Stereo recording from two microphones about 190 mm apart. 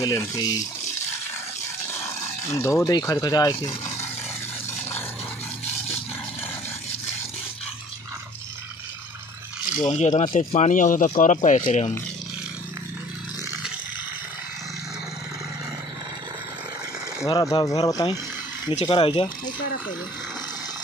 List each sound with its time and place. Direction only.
0.0 s speech: 15° left (ahead or behind)
2.0 s speech: 15° left (ahead or behind)
9.9 s speech: 35° left (ahead or behind)
17.3 s speech: 20° left (ahead or behind)